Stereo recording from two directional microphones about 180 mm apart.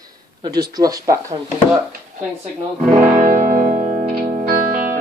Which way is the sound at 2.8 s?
10° right (ahead or behind).